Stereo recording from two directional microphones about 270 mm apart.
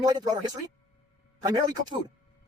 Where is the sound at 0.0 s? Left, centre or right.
Centre.